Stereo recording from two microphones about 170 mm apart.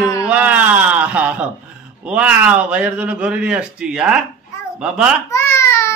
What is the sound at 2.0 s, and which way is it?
A man's voice, 5° right (ahead or behind).